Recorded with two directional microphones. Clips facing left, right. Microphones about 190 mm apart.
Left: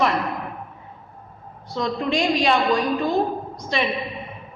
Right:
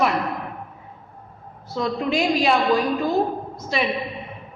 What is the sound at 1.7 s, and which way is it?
A woman's voice, 5° right (ahead or behind).